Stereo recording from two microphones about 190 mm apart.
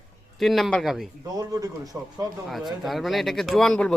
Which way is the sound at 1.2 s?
20° right (ahead or behind).